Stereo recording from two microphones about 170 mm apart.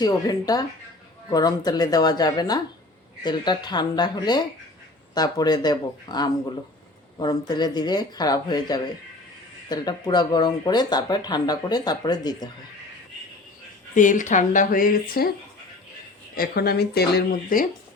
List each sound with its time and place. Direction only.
0.0 s speech: 25° left (ahead or behind)
13.9 s speech: 50° left (ahead or behind)
16.3 s speech: 65° left (ahead or behind)